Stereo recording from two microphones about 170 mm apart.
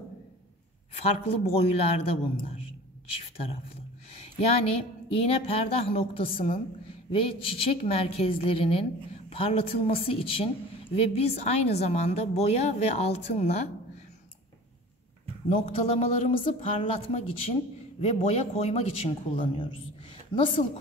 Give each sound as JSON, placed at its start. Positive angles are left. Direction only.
{"t": 0.9, "sound": "a woman's voice", "side_deg": 35}
{"t": 4.4, "sound": "a woman's voice", "side_deg": 35}
{"t": 15.5, "sound": "a woman's voice", "side_deg": 35}